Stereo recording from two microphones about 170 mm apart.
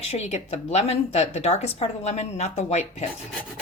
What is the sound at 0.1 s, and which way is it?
A woman's voice, 40° left (ahead or behind).